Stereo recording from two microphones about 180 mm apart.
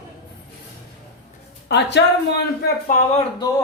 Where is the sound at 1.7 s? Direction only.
70° left (ahead or behind).